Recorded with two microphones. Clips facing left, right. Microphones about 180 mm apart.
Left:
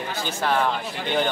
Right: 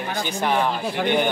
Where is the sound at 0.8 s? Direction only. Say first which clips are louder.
Right 7 dB; 60° right (ahead or behind).